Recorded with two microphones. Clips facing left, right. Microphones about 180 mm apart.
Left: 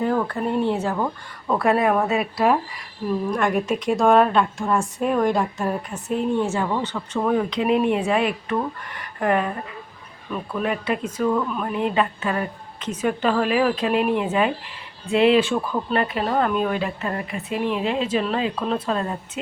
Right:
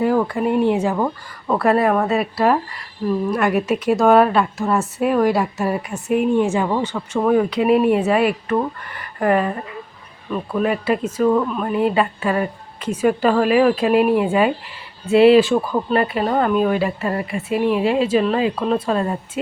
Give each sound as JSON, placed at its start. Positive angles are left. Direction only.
{"t": 0.0, "sound": "a woman's voice", "side_deg": -10}
{"t": 1.5, "sound": "a woman's voice", "side_deg": 0}
{"t": 10.6, "sound": "a woman's voice", "side_deg": 0}
{"t": 11.2, "sound": "speech", "side_deg": -25}
{"t": 11.5, "sound": "a woman's voice", "side_deg": -5}